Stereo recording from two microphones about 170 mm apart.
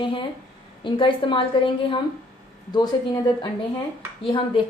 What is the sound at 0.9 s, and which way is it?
A woman's voice, 30° left (ahead or behind).